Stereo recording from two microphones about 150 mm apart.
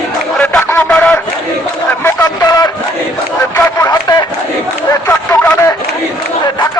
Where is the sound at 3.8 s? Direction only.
25° left (ahead or behind).